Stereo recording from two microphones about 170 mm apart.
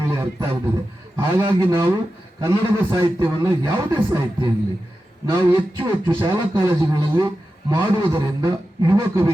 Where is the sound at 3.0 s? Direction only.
15° right (ahead or behind).